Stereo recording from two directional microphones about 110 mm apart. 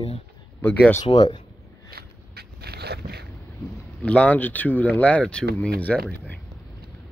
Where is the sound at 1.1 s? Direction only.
55° left (ahead or behind).